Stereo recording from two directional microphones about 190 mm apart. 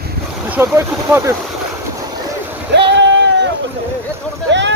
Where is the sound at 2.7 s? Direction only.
65° right (ahead or behind).